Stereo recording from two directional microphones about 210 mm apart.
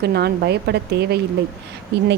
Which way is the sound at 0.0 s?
50° right (ahead or behind).